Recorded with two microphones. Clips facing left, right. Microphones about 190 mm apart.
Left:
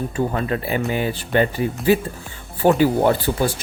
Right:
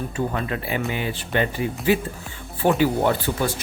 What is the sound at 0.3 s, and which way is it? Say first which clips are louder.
Speech: left 4 dB; 35° left (ahead or behind).